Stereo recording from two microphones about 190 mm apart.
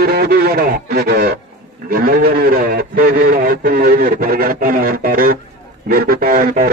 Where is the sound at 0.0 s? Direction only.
55° right (ahead or behind).